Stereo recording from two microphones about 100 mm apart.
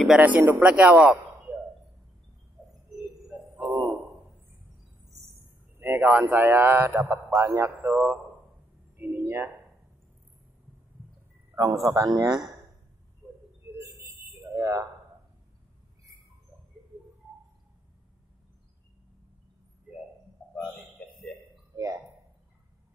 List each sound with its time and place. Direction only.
0.2 s a man's voice: 15° right (ahead or behind)
3.6 s a sound: 30° right (ahead or behind)
5.4 s a man's voice: 20° right (ahead or behind)
11.5 s a man's voice: 35° right (ahead or behind)
14.5 s speech: 35° right (ahead or behind)
21.7 s a sound: 35° right (ahead or behind)